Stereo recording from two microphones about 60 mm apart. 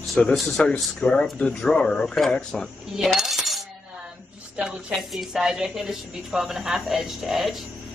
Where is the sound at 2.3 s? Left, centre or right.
Centre.